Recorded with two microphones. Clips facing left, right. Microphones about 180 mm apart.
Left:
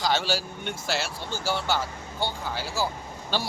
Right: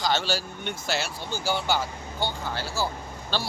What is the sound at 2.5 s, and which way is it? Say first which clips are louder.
Speech: left 1 dB; 15° left (ahead or behind).